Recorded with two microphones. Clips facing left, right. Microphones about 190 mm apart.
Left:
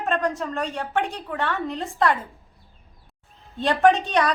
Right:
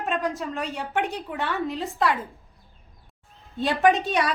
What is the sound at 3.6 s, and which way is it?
Speech, 10° right (ahead or behind).